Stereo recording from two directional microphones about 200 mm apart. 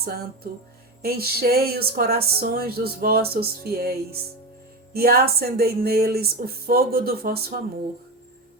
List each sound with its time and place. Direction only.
1.0 s speech: 50° right (ahead or behind)